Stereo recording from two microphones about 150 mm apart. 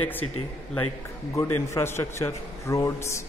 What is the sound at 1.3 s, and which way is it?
A man's voice, 20° left (ahead or behind).